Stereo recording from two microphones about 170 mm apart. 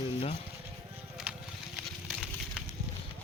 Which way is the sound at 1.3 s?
5° right (ahead or behind).